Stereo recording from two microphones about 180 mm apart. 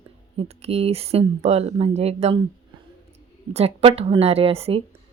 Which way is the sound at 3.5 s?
35° right (ahead or behind).